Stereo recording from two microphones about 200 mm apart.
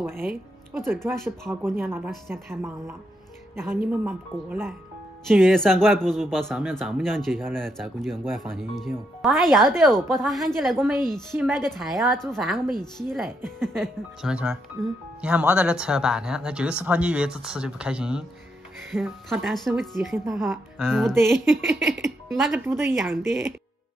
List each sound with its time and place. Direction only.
1.0 s speech: 5° right (ahead or behind)
12.7 s speech: 20° left (ahead or behind)
13.1 s speech: centre (ahead or behind)